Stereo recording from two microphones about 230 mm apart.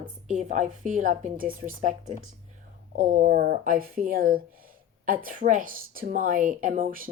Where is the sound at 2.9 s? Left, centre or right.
Right.